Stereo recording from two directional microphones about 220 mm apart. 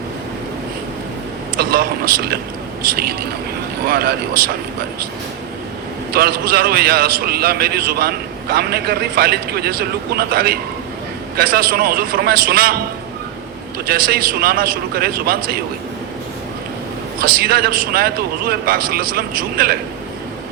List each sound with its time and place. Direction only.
1.5 s a man's voice: 45° right (ahead or behind)
6.1 s a man's voice: 45° right (ahead or behind)
13.8 s a man's voice: 45° right (ahead or behind)
17.2 s a man's voice: 45° right (ahead or behind)